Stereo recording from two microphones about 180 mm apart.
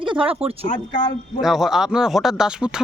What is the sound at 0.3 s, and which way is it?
Speech, 35° right (ahead or behind).